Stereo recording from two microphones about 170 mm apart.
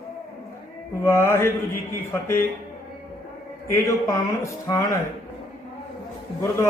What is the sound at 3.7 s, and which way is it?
A man's voice, 20° left (ahead or behind).